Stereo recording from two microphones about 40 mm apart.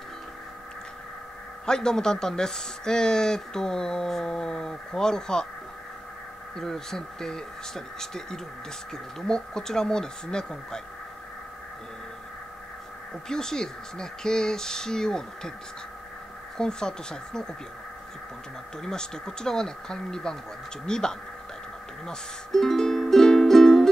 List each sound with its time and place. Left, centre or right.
1.7 s speech: centre
6.5 s speech: centre
13.3 s speech: centre
16.5 s speech: centre
18.8 s speech: centre
22.0 s music: centre